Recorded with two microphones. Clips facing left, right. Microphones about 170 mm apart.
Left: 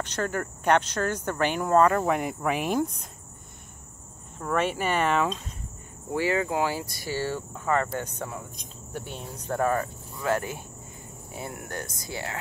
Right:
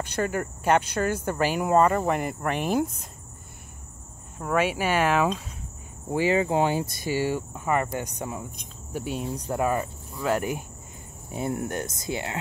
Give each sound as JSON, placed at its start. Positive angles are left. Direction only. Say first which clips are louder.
{"t": 0.0, "sound": "speech", "louder": "right 2 dB", "side_deg": -10}
{"t": 4.4, "sound": "speech", "louder": "right 2 dB", "side_deg": -5}
{"t": 6.1, "sound": "speech", "louder": "right 3 dB", "side_deg": -20}